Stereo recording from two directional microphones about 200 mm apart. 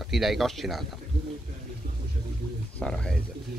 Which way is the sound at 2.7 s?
5° left (ahead or behind).